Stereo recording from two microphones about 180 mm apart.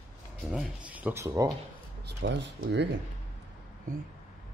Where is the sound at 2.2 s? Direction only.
75° right (ahead or behind).